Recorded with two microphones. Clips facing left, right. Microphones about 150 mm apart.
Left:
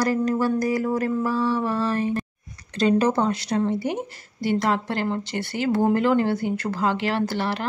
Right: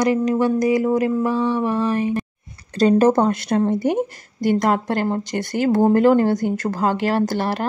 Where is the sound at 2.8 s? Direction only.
45° right (ahead or behind).